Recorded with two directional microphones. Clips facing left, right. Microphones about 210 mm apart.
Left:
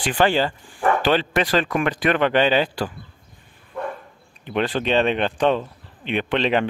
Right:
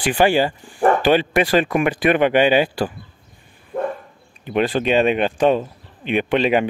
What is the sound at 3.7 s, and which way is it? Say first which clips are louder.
Dog: right 6 dB; 50° right (ahead or behind).